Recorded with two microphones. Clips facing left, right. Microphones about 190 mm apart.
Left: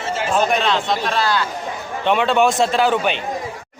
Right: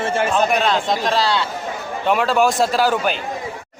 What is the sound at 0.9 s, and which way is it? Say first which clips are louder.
Speech: right 2 dB; 40° right (ahead or behind).